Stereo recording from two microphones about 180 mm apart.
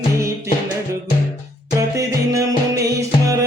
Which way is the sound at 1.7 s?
20° right (ahead or behind).